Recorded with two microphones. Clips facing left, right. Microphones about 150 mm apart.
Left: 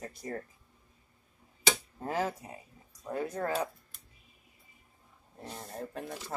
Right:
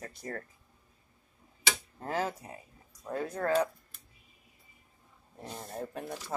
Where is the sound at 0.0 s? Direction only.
20° left (ahead or behind).